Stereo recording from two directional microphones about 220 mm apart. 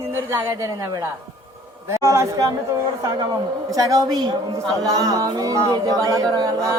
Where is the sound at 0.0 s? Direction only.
10° right (ahead or behind).